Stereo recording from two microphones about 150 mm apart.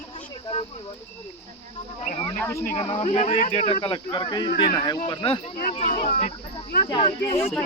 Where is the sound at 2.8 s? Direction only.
45° left (ahead or behind).